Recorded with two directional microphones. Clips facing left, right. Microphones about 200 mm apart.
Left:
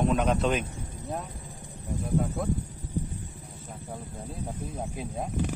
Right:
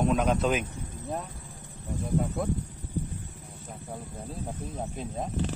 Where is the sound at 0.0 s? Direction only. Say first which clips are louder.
Even; centre (ahead or behind).